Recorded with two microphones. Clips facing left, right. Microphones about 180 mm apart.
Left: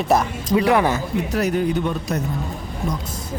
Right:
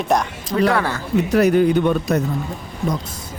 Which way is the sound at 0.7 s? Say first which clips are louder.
Left 3 dB; 15° left (ahead or behind).